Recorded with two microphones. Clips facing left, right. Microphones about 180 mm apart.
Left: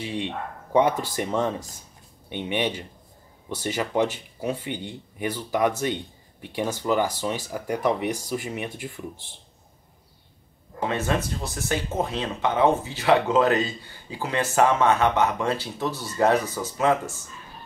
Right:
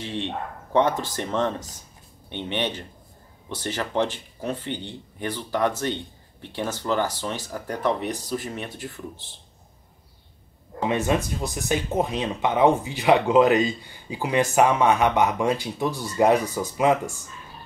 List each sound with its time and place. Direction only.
0.0 s speech: 10° left (ahead or behind)
10.9 s speech: 15° right (ahead or behind)